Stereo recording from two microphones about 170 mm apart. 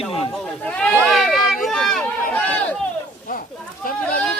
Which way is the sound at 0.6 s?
5° left (ahead or behind).